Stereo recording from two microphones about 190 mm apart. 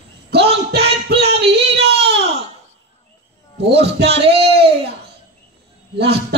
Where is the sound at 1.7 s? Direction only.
60° right (ahead or behind).